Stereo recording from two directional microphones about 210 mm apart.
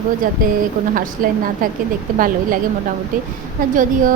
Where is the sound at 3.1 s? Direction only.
40° right (ahead or behind).